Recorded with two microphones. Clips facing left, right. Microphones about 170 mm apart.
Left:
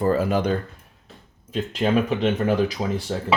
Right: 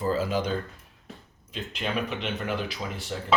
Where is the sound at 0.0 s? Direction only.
60° left (ahead or behind).